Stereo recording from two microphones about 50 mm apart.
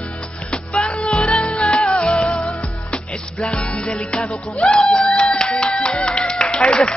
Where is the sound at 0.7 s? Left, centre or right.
Left.